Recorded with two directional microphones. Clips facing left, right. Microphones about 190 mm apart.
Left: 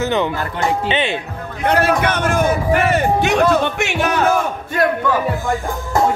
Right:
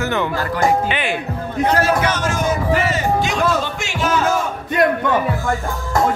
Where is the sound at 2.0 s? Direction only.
55° left (ahead or behind).